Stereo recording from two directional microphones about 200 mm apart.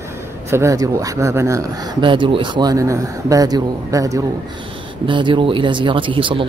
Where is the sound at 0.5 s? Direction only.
15° right (ahead or behind).